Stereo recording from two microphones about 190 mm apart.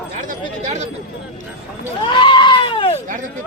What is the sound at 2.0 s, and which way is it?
Goat, 25° left (ahead or behind).